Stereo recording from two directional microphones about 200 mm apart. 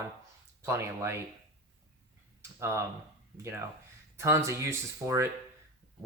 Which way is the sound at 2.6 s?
15° right (ahead or behind).